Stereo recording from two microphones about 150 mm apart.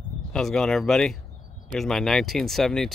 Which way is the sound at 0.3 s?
5° left (ahead or behind).